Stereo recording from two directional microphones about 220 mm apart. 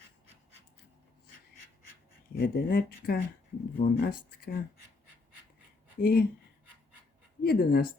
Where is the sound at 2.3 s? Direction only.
45° left (ahead or behind).